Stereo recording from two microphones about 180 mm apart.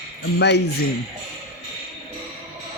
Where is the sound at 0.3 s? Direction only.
70° left (ahead or behind).